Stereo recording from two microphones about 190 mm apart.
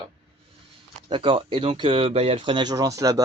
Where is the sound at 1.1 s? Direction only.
25° right (ahead or behind).